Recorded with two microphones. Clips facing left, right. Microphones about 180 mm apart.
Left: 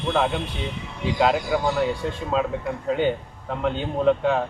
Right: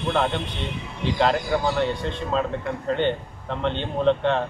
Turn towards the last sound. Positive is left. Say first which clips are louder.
# left 1 dB
turn(degrees=5)  # may be behind; listen again after turning